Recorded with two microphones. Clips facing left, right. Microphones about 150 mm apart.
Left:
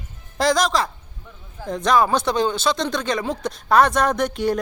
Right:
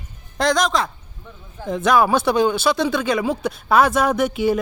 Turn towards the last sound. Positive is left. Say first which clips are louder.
# right 2 dB
turn(degrees=-5)  # may be behind; listen again after turning